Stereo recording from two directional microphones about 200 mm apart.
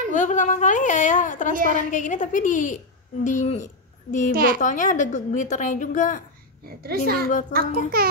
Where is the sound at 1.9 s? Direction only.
40° left (ahead or behind).